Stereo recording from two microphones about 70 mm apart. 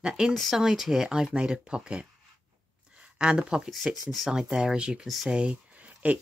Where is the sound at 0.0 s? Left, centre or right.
Centre.